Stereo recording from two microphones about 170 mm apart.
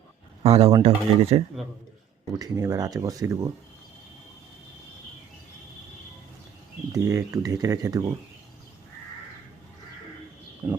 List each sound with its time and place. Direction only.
0.4 s speech: 35° right (ahead or behind)
2.3 s speech: 20° right (ahead or behind)
6.9 s speech: 20° right (ahead or behind)
10.6 s speech: 10° right (ahead or behind)